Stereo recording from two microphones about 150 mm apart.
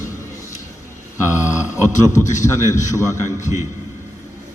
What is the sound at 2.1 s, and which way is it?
Speech, 55° left (ahead or behind).